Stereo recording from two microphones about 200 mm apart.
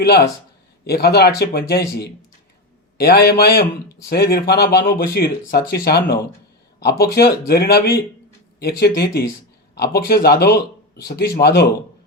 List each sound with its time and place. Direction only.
0.0 s speech: 50° left (ahead or behind)